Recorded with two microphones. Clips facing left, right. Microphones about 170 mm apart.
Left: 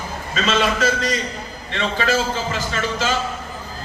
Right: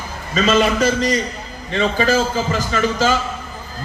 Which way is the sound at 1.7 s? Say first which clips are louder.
Right 4 dB; 40° right (ahead or behind).